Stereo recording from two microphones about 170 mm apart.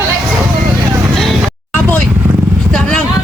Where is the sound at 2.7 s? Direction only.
5° left (ahead or behind).